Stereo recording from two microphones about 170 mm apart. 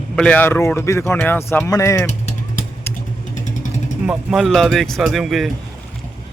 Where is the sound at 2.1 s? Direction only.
45° left (ahead or behind).